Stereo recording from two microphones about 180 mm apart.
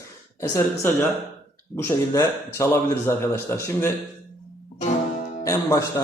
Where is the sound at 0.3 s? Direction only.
15° left (ahead or behind).